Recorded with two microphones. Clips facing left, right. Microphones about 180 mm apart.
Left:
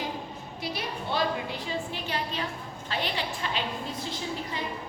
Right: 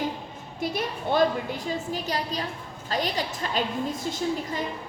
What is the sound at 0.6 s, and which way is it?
A woman's voice, 50° right (ahead or behind).